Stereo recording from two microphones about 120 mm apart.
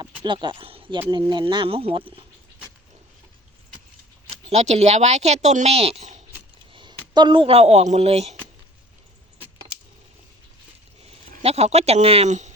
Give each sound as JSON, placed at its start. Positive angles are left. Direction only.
{"t": 0.0, "sound": "speech", "side_deg": -40}
{"t": 4.4, "sound": "speech", "side_deg": -70}
{"t": 7.1, "sound": "speech", "side_deg": -40}
{"t": 11.3, "sound": "speech", "side_deg": -60}